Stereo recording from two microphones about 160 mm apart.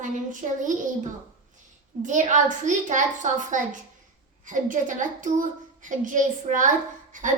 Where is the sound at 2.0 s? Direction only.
50° right (ahead or behind).